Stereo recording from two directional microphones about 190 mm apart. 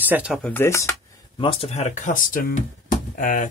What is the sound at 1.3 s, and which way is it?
Speech, 30° left (ahead or behind).